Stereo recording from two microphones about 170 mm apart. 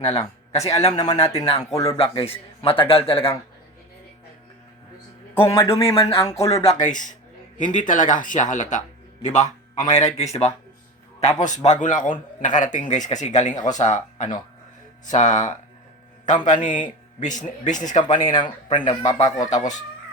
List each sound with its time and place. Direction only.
0.0 s speech: 40° left (ahead or behind)
5.7 s speech: 35° left (ahead or behind)
18.3 s speech: 25° left (ahead or behind)